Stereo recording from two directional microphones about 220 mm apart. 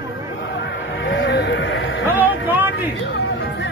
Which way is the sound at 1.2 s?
55° left (ahead or behind).